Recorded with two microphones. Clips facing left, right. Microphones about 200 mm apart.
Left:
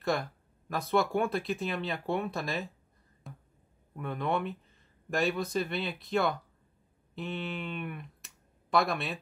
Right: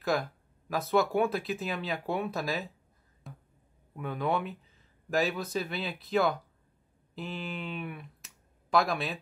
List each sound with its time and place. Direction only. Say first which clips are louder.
0.0 s speech: right 1 dB; centre (ahead or behind)
3.3 s a sound: even; centre (ahead or behind)
3.9 s speech: right 1 dB; centre (ahead or behind)